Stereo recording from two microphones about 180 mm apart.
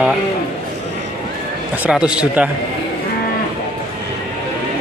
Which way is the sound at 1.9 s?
5° right (ahead or behind).